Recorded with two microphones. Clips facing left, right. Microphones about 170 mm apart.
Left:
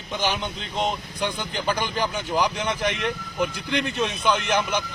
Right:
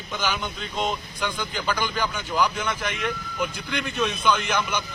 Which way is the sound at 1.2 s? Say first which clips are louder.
Left 3 dB; 25° left (ahead or behind).